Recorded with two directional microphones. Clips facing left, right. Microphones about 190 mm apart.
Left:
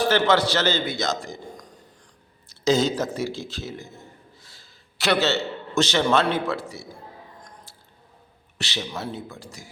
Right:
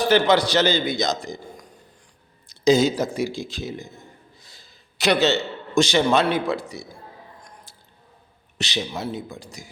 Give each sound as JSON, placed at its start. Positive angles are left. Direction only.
{"t": 0.0, "sound": "a man's voice", "side_deg": -15}
{"t": 7.4, "sound": "a sound", "side_deg": -15}
{"t": 8.5, "sound": "a man's voice", "side_deg": -20}